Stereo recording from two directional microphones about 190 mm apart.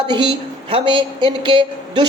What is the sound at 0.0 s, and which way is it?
Speech, 25° right (ahead or behind).